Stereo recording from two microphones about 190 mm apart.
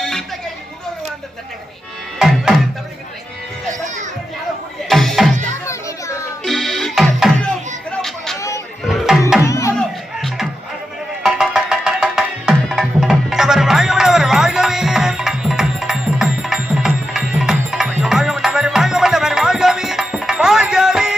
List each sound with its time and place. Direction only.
0.0 s a sound: centre (ahead or behind)
2.1 s music: 5° right (ahead or behind)
3.8 s children playing: 40° right (ahead or behind)
4.9 s music: centre (ahead or behind)
5.6 s children playing: 15° left (ahead or behind)
6.4 s music: centre (ahead or behind)
7.9 s a sound: centre (ahead or behind)
8.4 s a sound: 15° left (ahead or behind)
8.8 s music: centre (ahead or behind)
9.4 s music: 15° left (ahead or behind)
9.7 s music: centre (ahead or behind)